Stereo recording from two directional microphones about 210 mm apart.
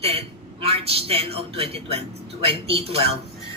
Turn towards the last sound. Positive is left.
turn(degrees=-30)  # may be behind; listen again after turning